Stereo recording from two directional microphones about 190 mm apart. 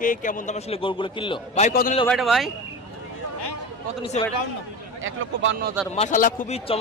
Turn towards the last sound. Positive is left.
turn(degrees=45)  # may be behind; listen again after turning